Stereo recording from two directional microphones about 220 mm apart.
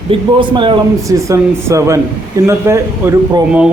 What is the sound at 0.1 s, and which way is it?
A man's voice, 20° right (ahead or behind).